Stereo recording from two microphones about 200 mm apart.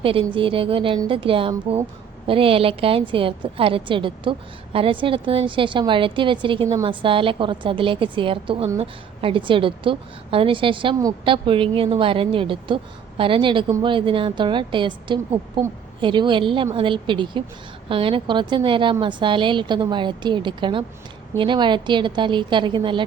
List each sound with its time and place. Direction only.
0.0 s a woman's voice: 25° right (ahead or behind)